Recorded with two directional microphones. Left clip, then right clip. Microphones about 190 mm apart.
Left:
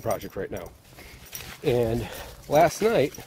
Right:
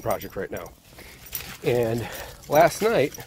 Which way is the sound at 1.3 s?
60° right (ahead or behind).